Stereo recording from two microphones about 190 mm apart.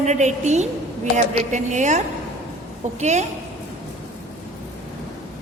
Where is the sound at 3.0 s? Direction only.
35° right (ahead or behind).